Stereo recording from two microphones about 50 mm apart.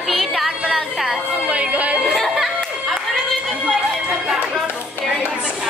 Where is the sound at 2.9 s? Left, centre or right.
Centre.